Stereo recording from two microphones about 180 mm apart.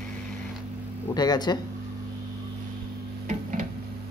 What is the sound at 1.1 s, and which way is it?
Speech, 20° left (ahead or behind).